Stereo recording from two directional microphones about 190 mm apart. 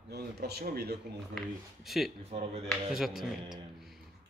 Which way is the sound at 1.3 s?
Centre (ahead or behind).